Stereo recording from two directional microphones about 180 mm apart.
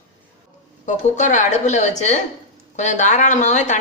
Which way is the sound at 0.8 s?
40° left (ahead or behind).